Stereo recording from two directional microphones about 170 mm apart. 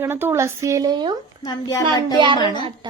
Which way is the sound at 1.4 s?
20° left (ahead or behind).